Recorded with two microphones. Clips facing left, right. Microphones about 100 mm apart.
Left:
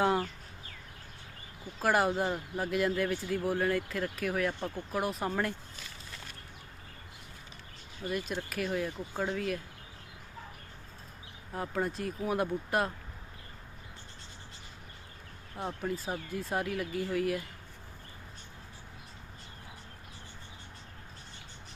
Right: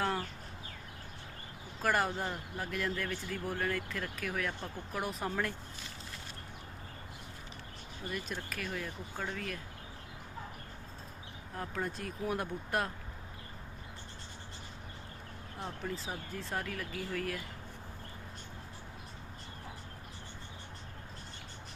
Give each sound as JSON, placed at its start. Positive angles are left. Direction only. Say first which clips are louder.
{"t": 1.8, "sound": "speech", "louder": "left 4 dB", "side_deg": 5}
{"t": 8.1, "sound": "speech", "louder": "left 6 dB", "side_deg": 5}
{"t": 11.5, "sound": "speech", "louder": "left 5 dB", "side_deg": 10}
{"t": 15.5, "sound": "speech", "louder": "left 5 dB", "side_deg": 15}